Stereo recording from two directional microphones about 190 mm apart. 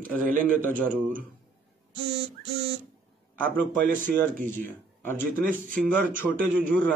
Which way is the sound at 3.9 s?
45° right (ahead or behind).